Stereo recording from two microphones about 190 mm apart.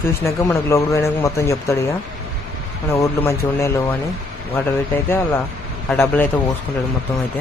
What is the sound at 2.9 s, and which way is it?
A man's voice, 15° left (ahead or behind).